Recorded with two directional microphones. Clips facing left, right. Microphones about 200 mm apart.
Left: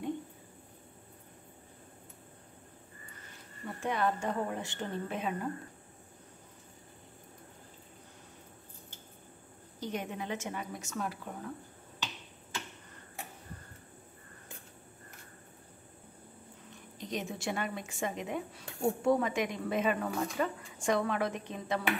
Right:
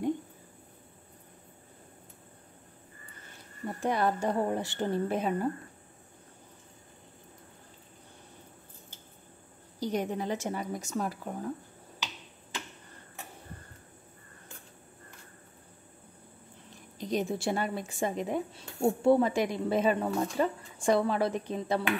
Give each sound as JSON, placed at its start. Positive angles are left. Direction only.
{"t": 3.6, "sound": "speech", "side_deg": -35}
{"t": 9.8, "sound": "speech", "side_deg": -35}
{"t": 17.0, "sound": "speech", "side_deg": -35}